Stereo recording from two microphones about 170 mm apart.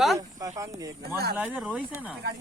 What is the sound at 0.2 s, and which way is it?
Speech, 20° right (ahead or behind).